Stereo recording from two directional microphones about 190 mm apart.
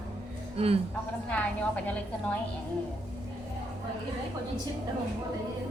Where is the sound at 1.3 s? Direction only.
5° left (ahead or behind).